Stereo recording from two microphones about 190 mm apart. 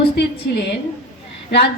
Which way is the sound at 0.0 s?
60° left (ahead or behind).